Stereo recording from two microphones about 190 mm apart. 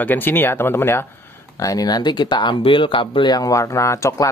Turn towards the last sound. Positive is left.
turn(degrees=15)  # may be behind; listen again after turning